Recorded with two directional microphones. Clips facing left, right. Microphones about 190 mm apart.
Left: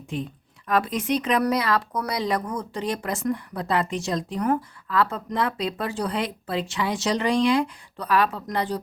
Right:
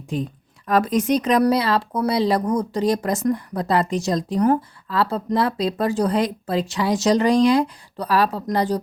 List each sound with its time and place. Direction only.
0.1 s speech: 40° right (ahead or behind)